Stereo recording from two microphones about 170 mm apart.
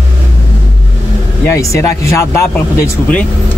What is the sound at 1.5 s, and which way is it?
Speech, 15° left (ahead or behind).